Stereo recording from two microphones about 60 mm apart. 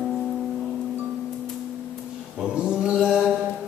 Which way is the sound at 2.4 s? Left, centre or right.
Centre.